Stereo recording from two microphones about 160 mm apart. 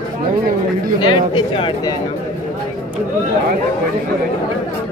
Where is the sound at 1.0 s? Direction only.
30° left (ahead or behind).